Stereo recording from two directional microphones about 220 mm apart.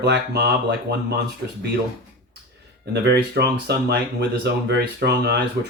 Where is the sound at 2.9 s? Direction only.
50° right (ahead or behind).